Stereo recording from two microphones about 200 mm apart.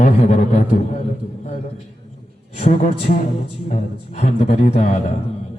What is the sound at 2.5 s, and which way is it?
A man's voice, 35° left (ahead or behind).